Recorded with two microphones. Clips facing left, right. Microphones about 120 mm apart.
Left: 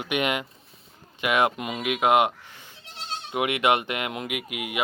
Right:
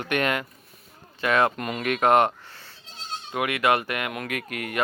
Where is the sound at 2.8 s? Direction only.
70° left (ahead or behind).